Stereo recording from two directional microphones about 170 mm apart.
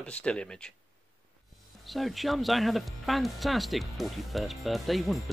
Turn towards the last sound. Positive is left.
turn(degrees=0)  # may be behind; listen again after turning